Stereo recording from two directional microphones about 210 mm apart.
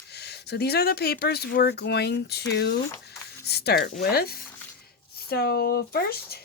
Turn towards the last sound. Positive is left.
turn(degrees=50)  # may be behind; listen again after turning